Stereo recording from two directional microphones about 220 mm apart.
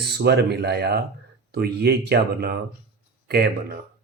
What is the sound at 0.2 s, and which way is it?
Speech, 50° right (ahead or behind).